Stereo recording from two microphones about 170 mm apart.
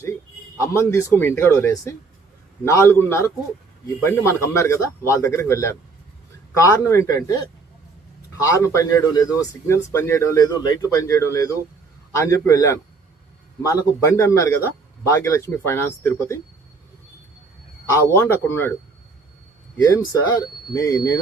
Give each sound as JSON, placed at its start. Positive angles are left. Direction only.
{"t": 0.6, "sound": "speech", "side_deg": 15}
{"t": 8.4, "sound": "speech", "side_deg": 15}
{"t": 18.1, "sound": "speech", "side_deg": 15}
{"t": 19.7, "sound": "speech", "side_deg": 20}